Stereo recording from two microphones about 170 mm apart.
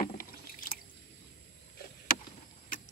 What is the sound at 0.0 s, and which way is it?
Drip, 55° left (ahead or behind).